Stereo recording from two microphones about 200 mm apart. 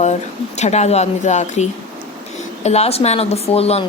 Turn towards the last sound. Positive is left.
turn(degrees=30)  # may be behind; listen again after turning